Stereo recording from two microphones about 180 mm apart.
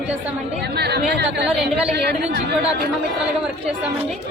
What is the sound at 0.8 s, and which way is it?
A man's voice, 65° right (ahead or behind).